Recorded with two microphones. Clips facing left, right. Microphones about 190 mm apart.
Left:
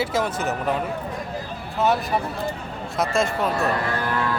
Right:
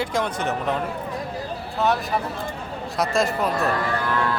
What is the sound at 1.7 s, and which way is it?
Speech, centre (ahead or behind).